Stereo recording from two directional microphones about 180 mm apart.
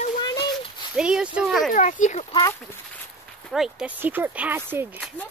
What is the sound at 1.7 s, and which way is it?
Speech, 45° left (ahead or behind).